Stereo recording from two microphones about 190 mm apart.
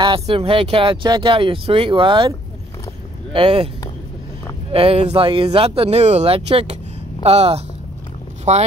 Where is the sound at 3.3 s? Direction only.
30° right (ahead or behind).